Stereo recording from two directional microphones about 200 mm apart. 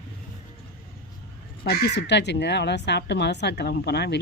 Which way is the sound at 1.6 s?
50° left (ahead or behind).